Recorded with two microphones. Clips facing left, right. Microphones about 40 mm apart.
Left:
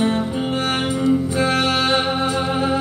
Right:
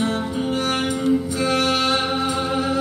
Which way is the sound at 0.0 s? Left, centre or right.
Left.